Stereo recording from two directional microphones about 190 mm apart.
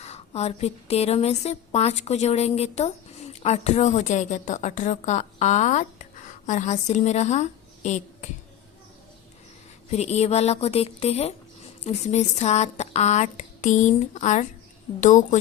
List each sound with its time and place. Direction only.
0.0 s a woman's voice: 35° left (ahead or behind)
9.9 s a woman's voice: 35° left (ahead or behind)